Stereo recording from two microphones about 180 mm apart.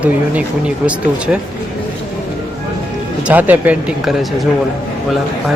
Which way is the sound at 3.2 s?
10° right (ahead or behind).